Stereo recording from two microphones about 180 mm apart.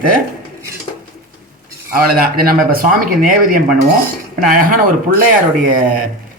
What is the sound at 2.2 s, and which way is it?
Dishes, 55° right (ahead or behind).